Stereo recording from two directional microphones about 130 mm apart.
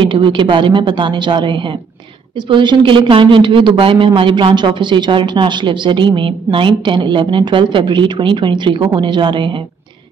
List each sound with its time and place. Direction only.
0.0 s speech: 40° right (ahead or behind)